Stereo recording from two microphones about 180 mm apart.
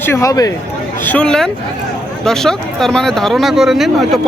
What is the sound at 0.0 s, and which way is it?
Speech, 15° left (ahead or behind).